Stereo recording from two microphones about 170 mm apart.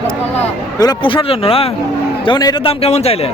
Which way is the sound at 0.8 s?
25° left (ahead or behind).